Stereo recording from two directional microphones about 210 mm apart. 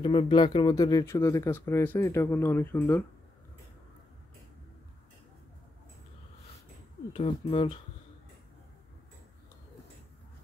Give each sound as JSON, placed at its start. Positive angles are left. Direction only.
{"t": 0.0, "sound": "speech", "side_deg": 25}
{"t": 7.1, "sound": "speech", "side_deg": 25}